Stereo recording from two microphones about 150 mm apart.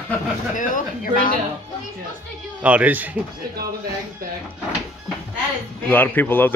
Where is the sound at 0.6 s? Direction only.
60° left (ahead or behind).